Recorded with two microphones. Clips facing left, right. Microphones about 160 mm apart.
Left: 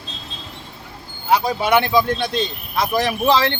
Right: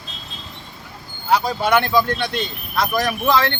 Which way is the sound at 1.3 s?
10° left (ahead or behind).